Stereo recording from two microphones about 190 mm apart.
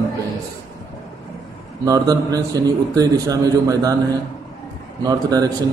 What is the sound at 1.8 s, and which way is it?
A man's voice, 20° right (ahead or behind).